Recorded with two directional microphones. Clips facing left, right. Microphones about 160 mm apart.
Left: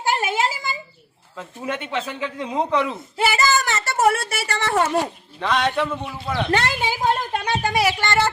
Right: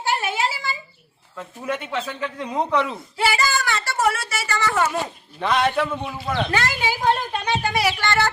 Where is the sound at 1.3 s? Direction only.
10° left (ahead or behind).